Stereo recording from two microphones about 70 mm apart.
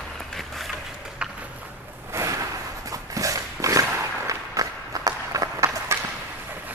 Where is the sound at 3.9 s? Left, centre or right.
Right.